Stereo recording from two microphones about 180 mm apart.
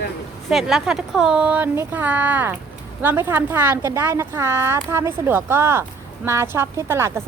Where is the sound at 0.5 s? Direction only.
Centre (ahead or behind).